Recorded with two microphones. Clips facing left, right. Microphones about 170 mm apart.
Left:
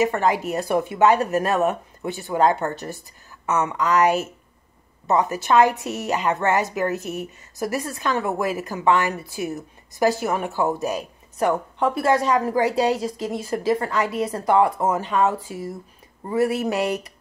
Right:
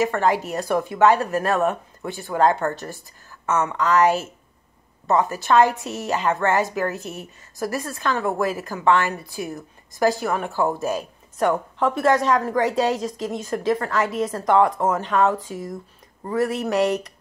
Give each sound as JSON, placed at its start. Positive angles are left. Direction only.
{"t": 0.0, "sound": "speech", "side_deg": 15}
{"t": 11.3, "sound": "a woman's voice", "side_deg": 0}